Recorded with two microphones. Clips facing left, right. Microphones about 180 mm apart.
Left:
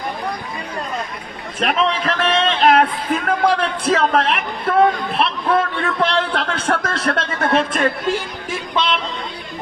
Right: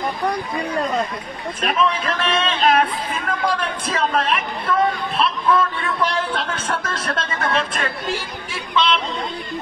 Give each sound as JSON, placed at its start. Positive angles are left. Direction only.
{"t": 1.6, "sound": "speech", "side_deg": 70}